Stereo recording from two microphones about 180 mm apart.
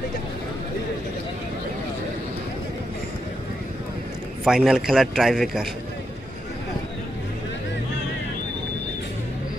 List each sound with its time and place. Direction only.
4.5 s a man's voice: centre (ahead or behind)